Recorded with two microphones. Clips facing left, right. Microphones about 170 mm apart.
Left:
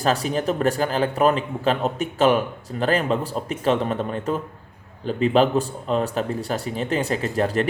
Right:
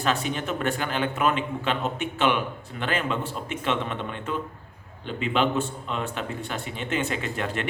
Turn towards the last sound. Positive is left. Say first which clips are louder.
# left 7 dB
turn(degrees=35)  # may be behind; listen again after turning